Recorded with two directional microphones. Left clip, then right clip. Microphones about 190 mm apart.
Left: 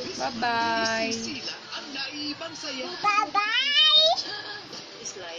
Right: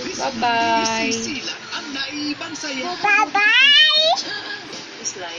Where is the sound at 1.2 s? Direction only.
60° right (ahead or behind).